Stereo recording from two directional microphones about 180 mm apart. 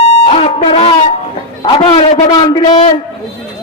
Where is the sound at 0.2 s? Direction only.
35° left (ahead or behind).